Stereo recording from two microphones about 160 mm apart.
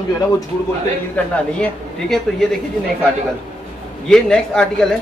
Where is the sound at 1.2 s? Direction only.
10° left (ahead or behind).